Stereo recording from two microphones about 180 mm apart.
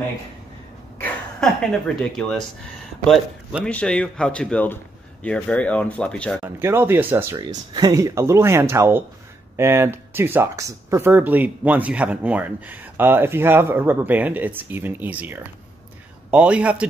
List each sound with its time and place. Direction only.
1.0 s speech: 5° left (ahead or behind)
6.4 s speech: 10° right (ahead or behind)
7.3 s speech: 20° right (ahead or behind); by 16.8 s 5° right (ahead or behind)